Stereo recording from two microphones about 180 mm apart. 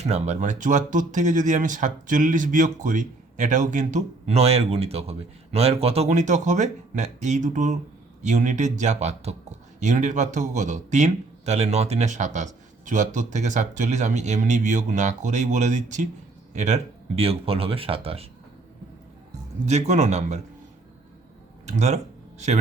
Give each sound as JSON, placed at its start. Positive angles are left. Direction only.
{"t": 0.0, "sound": "a man's voice", "side_deg": -40}
{"t": 19.3, "sound": "a man's voice", "side_deg": -40}
{"t": 21.7, "sound": "speech", "side_deg": -40}